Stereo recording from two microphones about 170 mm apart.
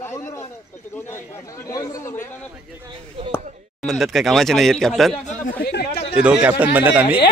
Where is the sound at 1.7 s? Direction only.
20° left (ahead or behind).